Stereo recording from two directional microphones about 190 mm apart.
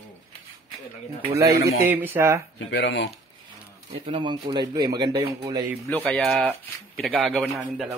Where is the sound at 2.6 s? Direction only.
70° left (ahead or behind).